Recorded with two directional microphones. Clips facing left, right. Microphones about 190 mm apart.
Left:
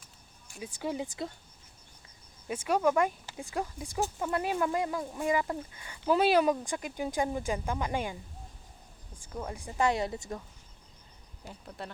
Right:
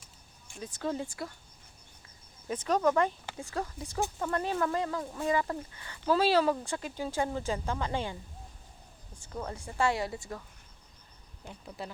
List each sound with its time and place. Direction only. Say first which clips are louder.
0.5 s speech: right 1 dB; 10° left (ahead or behind)
2.5 s speech: even; 10° left (ahead or behind)
9.3 s a woman's voice: even; 10° left (ahead or behind)
11.4 s speech: right 1 dB; centre (ahead or behind)